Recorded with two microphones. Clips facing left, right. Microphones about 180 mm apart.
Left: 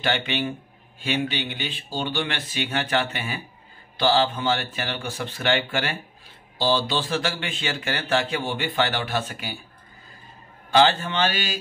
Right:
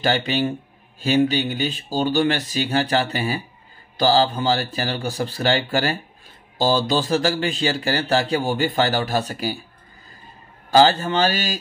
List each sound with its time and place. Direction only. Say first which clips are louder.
0.0 s speech: right 5 dB; 40° right (ahead or behind)
10.7 s speech: right 4 dB; 40° right (ahead or behind)